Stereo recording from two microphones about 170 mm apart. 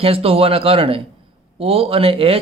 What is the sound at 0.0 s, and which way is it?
Speech, 35° right (ahead or behind).